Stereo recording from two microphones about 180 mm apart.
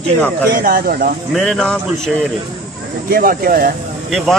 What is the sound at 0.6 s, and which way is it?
Speech, 50° right (ahead or behind).